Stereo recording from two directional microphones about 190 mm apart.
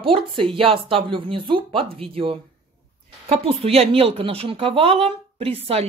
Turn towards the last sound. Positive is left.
turn(degrees=-30)  # may be behind; listen again after turning